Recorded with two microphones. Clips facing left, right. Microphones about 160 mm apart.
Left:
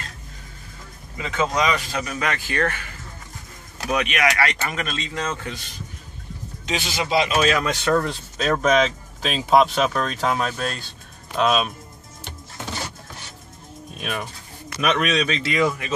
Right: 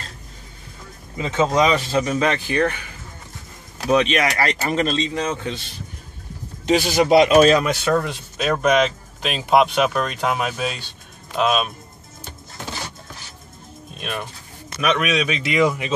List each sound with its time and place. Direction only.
1.1 s speech: 25° right (ahead or behind)
3.9 s speech: 30° right (ahead or behind)
6.7 s speech: 40° right (ahead or behind)
7.1 s speech: 55° right (ahead or behind)
7.6 s speech: 10° right (ahead or behind)
13.9 s speech: 5° left (ahead or behind); by 15.9 s 15° right (ahead or behind)